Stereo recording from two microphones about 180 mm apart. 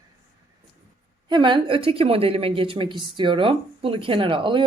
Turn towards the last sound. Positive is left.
turn(degrees=-30)  # may be behind; listen again after turning